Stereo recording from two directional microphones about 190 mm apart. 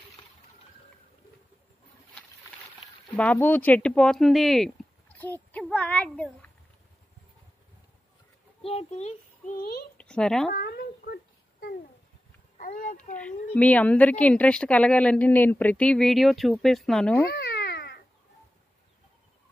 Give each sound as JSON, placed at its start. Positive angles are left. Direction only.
{"t": 3.1, "sound": "speech", "side_deg": 10}
{"t": 8.6, "sound": "a child's voice", "side_deg": 35}
{"t": 9.9, "sound": "a sound", "side_deg": 5}
{"t": 10.5, "sound": "a sound", "side_deg": 55}
{"t": 12.5, "sound": "speech", "side_deg": 45}
{"t": 13.1, "sound": "a woman's voice", "side_deg": 5}
{"t": 17.3, "sound": "cat", "side_deg": 60}